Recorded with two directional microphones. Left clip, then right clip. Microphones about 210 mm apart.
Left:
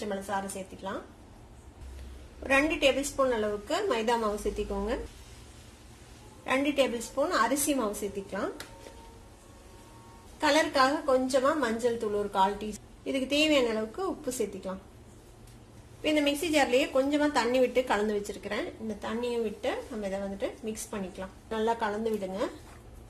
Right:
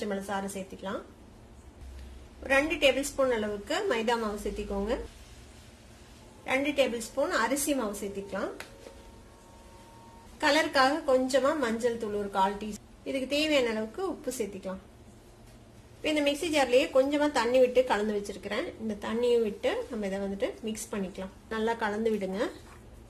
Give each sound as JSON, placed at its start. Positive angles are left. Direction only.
{"t": 0.0, "sound": "a woman's voice", "side_deg": -15}
{"t": 2.4, "sound": "a woman's voice", "side_deg": 0}
{"t": 6.4, "sound": "a woman's voice", "side_deg": 0}
{"t": 10.4, "sound": "a woman's voice", "side_deg": -10}
{"t": 16.0, "sound": "a woman's voice", "side_deg": 0}
{"t": 18.9, "sound": "a woman's voice", "side_deg": -20}
{"t": 21.5, "sound": "a woman's voice", "side_deg": 0}
{"t": 21.7, "sound": "a woman's voice", "side_deg": -15}